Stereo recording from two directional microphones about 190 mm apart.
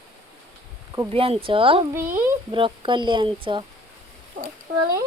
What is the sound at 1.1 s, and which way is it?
A woman's voice, 30° right (ahead or behind).